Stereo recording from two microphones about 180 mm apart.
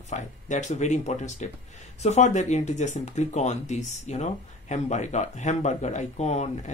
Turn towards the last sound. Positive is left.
turn(degrees=40)  # may be behind; listen again after turning